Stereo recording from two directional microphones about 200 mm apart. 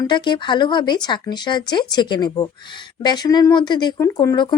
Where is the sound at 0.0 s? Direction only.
20° left (ahead or behind).